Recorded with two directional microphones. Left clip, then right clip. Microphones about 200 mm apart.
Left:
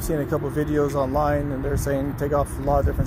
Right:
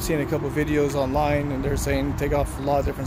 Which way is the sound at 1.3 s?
20° right (ahead or behind).